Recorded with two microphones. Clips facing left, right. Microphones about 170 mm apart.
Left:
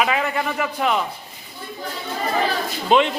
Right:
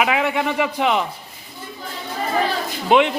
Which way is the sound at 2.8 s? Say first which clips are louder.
Right 2 dB; 15° right (ahead or behind).